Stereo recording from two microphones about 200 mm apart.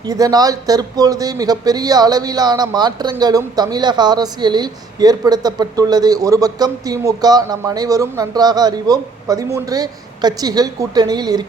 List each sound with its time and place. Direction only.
0.1 s speech: 20° right (ahead or behind)